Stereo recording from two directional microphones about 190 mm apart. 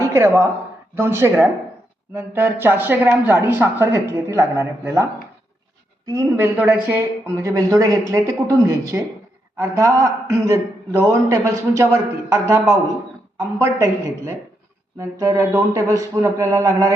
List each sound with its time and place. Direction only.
0.0 s a man's voice: 15° right (ahead or behind)
6.1 s speech: 15° right (ahead or behind)